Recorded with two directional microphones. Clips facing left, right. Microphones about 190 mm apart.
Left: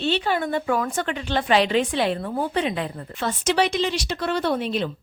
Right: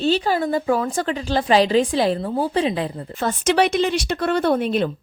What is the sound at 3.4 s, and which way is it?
A woman's voice, 55° right (ahead or behind).